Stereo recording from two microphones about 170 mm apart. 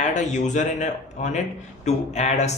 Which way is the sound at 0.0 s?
45° left (ahead or behind).